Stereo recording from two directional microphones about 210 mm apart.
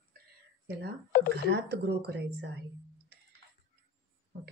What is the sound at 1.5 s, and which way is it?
A woman's voice, 55° right (ahead or behind).